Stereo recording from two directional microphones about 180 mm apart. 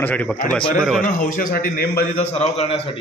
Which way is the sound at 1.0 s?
50° left (ahead or behind).